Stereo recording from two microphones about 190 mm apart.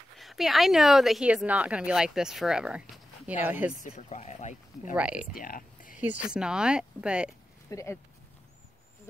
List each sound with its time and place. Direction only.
0.2 s speech: centre (ahead or behind)
3.8 s speech: 35° left (ahead or behind)
4.9 s speech: 5° right (ahead or behind)
5.3 s speech: 50° left (ahead or behind)
5.9 s speech: 5° right (ahead or behind)
7.7 s speech: 15° left (ahead or behind)